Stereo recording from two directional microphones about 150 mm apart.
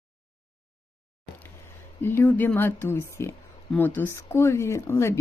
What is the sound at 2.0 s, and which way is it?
Speech, 15° left (ahead or behind).